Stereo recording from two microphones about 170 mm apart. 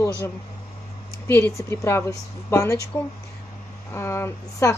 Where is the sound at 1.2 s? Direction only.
15° left (ahead or behind).